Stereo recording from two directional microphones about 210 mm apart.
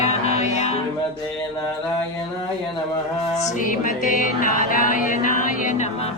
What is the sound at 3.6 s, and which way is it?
A woman's voice, 40° left (ahead or behind).